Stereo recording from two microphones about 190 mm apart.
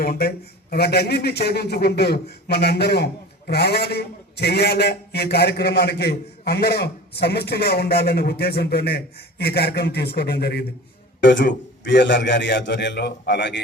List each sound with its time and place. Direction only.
0.0 s speech: 55° left (ahead or behind)
11.2 s a man's voice: 70° left (ahead or behind)